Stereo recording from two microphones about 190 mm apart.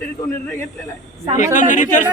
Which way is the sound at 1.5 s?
40° left (ahead or behind).